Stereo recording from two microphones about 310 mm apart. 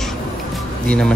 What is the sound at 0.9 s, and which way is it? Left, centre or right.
Speech, centre.